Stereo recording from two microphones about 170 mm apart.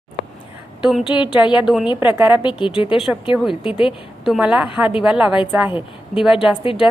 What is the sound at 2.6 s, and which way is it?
A woman's voice, 30° left (ahead or behind).